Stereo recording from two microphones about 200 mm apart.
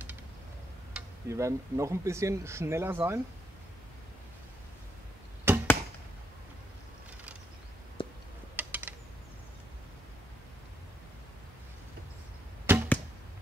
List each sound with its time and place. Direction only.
0.9 s speech: 15° right (ahead or behind)
5.5 s arrow: 10° right (ahead or behind)
8.0 s tick: 25° left (ahead or behind)
8.5 s mechanisms: 10° right (ahead or behind)
12.7 s arrow: 10° right (ahead or behind)